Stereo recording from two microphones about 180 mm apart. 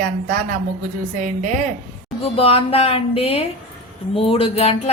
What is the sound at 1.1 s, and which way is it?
Speech, 45° right (ahead or behind).